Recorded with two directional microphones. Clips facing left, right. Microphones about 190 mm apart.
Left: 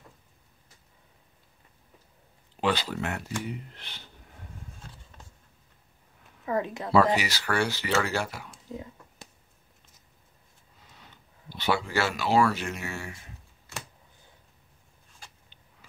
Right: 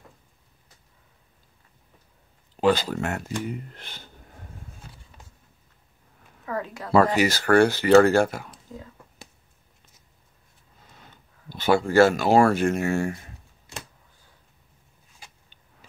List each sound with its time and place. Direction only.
2.5 s speech: 45° right (ahead or behind)
6.4 s a woman's voice: 20° left (ahead or behind)
7.2 s speech: 50° right (ahead or behind)
11.0 s speech: 45° right (ahead or behind)